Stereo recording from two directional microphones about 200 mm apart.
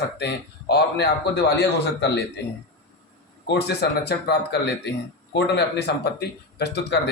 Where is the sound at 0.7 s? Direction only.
55° left (ahead or behind).